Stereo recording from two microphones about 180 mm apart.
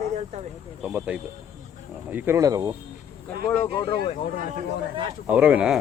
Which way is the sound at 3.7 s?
30° left (ahead or behind).